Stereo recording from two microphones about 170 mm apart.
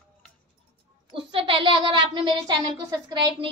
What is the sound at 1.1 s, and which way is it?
A child's voice, 30° right (ahead or behind).